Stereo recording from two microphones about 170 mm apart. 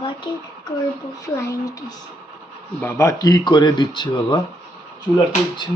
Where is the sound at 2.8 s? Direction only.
15° left (ahead or behind).